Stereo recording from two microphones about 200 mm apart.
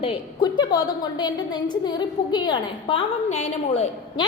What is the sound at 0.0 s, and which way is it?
A woman's voice, 25° left (ahead or behind).